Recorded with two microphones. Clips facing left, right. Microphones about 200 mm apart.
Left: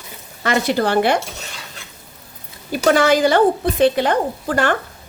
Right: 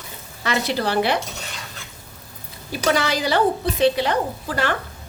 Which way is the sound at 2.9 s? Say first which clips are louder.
Left 7 dB; 50° left (ahead or behind).